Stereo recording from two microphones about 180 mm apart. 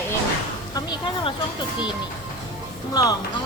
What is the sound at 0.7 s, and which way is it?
Speech, 25° left (ahead or behind).